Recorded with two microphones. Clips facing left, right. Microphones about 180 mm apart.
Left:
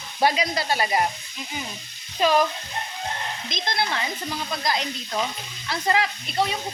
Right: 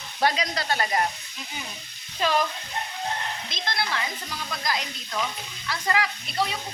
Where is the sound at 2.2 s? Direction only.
15° left (ahead or behind).